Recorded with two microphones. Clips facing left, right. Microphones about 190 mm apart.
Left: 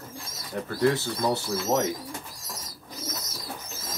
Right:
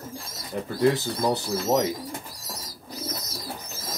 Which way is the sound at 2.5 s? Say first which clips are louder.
Right 3 dB; 35° right (ahead or behind).